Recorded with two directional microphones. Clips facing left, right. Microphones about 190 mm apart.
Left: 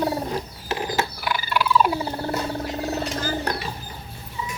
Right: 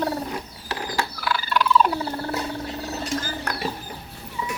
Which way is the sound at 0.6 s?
20° left (ahead or behind).